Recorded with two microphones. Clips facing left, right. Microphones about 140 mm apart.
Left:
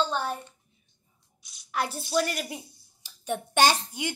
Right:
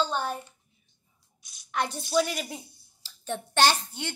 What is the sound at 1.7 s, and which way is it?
A woman's voice, 5° left (ahead or behind).